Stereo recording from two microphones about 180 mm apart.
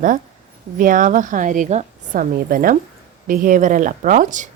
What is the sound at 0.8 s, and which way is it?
A woman's voice, 45° right (ahead or behind).